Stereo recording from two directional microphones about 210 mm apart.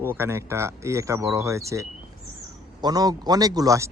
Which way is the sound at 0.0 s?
10° right (ahead or behind).